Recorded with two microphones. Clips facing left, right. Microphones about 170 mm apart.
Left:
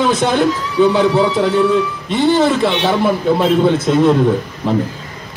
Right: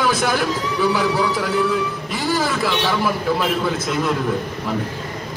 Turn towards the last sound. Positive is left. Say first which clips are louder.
# left 6 dB
turn(degrees=30)  # may be behind; listen again after turning